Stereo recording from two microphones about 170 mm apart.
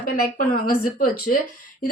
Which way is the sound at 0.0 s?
55° left (ahead or behind).